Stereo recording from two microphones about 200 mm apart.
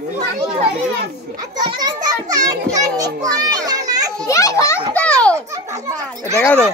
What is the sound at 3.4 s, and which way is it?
Children playing, 20° right (ahead or behind).